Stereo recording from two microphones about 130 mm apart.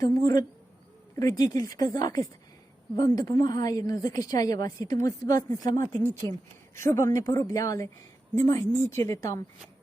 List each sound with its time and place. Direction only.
0.0 s a woman's voice: 25° left (ahead or behind)